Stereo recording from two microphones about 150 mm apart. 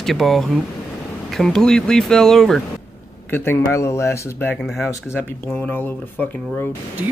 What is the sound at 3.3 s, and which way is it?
Speech, 15° left (ahead or behind).